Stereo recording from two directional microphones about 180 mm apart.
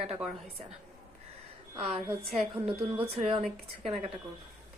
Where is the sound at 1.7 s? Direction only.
35° right (ahead or behind).